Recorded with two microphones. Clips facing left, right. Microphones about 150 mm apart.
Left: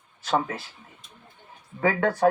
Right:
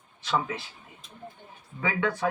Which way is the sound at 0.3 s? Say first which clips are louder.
Left 3 dB; 50° left (ahead or behind).